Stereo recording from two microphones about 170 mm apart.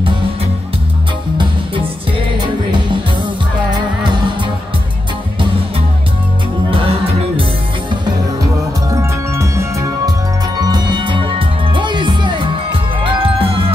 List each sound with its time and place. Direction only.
2.4 s music: 25° right (ahead or behind)
6.7 s music: 30° right (ahead or behind)
8.9 s music: 15° right (ahead or behind); by 13.7 s 35° right (ahead or behind)